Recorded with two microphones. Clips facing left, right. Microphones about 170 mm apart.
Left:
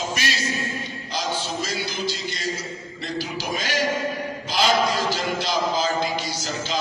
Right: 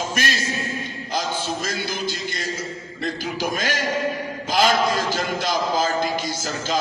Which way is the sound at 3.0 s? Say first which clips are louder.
Right 4 dB; 50° right (ahead or behind).